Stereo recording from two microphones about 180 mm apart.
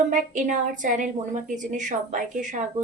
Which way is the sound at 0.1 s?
45° right (ahead or behind).